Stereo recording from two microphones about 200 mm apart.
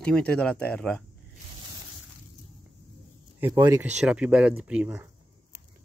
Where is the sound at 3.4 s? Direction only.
15° right (ahead or behind).